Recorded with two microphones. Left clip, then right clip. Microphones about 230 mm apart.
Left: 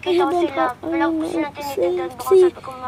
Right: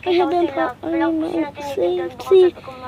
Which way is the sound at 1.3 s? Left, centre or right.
Left.